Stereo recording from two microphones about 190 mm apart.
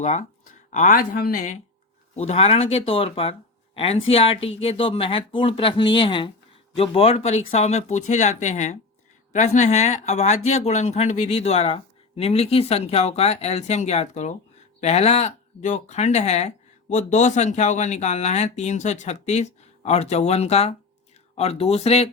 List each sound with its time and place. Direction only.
0.0 s speech: 35° left (ahead or behind)